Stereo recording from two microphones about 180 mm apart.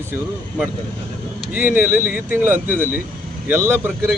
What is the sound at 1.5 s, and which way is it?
Speech, 10° right (ahead or behind).